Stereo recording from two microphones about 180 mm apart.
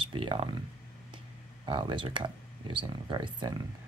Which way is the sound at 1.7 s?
30° right (ahead or behind).